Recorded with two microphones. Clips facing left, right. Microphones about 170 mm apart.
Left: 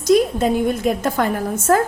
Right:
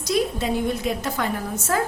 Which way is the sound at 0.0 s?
50° left (ahead or behind).